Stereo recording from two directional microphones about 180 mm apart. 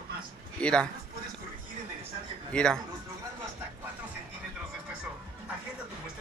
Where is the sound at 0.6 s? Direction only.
5° left (ahead or behind).